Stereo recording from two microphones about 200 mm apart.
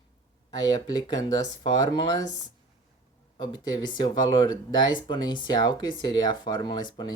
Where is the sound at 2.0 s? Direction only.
15° left (ahead or behind).